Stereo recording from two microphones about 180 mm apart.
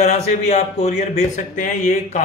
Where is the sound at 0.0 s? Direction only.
40° left (ahead or behind).